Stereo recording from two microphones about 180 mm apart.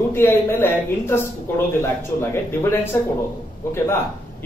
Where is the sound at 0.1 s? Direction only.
10° left (ahead or behind).